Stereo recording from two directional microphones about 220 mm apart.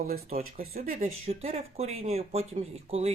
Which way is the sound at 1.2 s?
30° right (ahead or behind).